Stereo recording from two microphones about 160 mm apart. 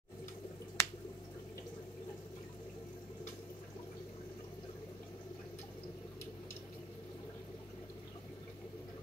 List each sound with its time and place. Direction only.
0.8 s finger snapping: 15° left (ahead or behind)